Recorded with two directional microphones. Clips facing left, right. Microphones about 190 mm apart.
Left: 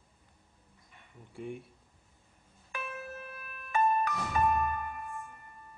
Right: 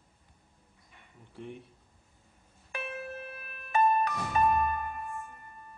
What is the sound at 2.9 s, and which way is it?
Music, 30° right (ahead or behind).